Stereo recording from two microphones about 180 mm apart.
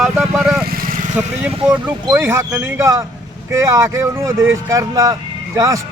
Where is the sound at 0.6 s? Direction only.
55° right (ahead or behind).